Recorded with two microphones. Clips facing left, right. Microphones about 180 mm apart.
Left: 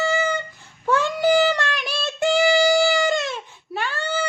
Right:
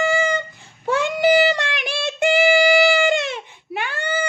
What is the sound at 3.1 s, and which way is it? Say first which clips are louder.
Baby cry: right 2 dB; 65° right (ahead or behind).